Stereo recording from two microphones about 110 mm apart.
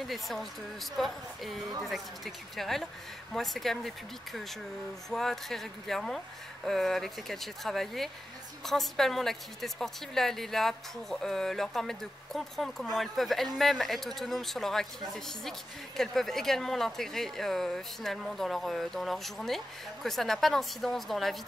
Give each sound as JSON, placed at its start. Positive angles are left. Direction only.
{"t": 0.0, "sound": "speech", "side_deg": 0}